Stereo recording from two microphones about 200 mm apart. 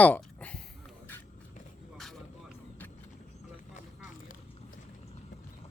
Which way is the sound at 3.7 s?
40° left (ahead or behind).